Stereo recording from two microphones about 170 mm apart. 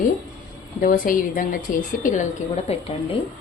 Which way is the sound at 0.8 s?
55° left (ahead or behind).